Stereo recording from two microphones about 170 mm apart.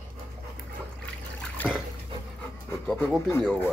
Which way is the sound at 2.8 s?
10° left (ahead or behind).